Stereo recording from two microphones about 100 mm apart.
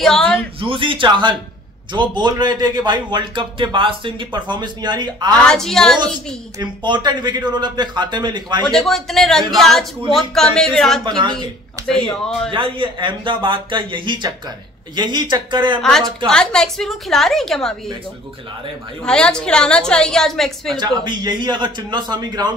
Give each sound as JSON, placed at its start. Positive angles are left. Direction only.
{"t": 0.0, "sound": "a sound", "side_deg": 5}
{"t": 0.6, "sound": "a man's voice", "side_deg": -60}
{"t": 5.5, "sound": "a woman's voice", "side_deg": 5}
{"t": 6.6, "sound": "a man's voice", "side_deg": -50}
{"t": 8.6, "sound": "a woman's voice", "side_deg": 5}
{"t": 11.1, "sound": "a man's voice", "side_deg": -45}
{"t": 11.9, "sound": "a woman's voice", "side_deg": 5}
{"t": 12.4, "sound": "a man's voice", "side_deg": -55}
{"t": 15.8, "sound": "a woman's voice", "side_deg": 5}
{"t": 19.0, "sound": "a woman's voice", "side_deg": 10}
{"t": 20.7, "sound": "a man's voice", "side_deg": -50}